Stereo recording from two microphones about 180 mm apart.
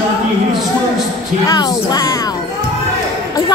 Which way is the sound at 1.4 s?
20° left (ahead or behind).